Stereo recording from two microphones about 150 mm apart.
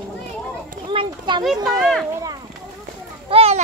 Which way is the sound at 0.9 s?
30° right (ahead or behind).